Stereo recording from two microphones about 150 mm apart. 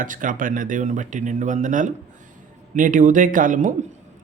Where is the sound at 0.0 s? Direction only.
65° right (ahead or behind).